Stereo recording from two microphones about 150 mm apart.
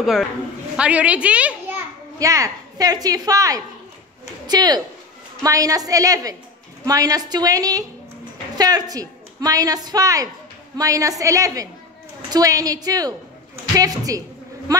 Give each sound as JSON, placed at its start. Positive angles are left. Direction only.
{"t": 0.7, "sound": "a child's voice", "side_deg": -10}
{"t": 2.1, "sound": "a woman's voice", "side_deg": -20}